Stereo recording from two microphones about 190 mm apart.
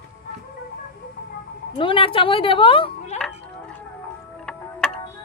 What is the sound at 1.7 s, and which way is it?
A woman's voice, 30° left (ahead or behind).